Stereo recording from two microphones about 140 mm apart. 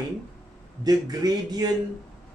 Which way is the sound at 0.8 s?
25° right (ahead or behind).